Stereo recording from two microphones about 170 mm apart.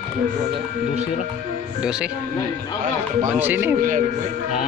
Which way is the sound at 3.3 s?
10° right (ahead or behind).